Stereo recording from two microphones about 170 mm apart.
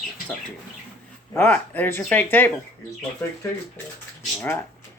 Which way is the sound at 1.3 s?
10° left (ahead or behind).